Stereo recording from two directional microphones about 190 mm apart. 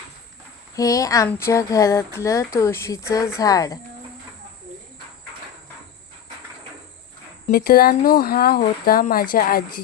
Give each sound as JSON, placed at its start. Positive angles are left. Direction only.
{"t": 0.8, "sound": "a sound", "side_deg": 20}
{"t": 3.1, "sound": "speech", "side_deg": 15}
{"t": 7.5, "sound": "speech", "side_deg": 50}